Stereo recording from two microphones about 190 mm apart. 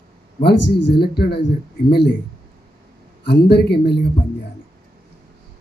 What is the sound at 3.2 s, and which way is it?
Speech, 60° left (ahead or behind).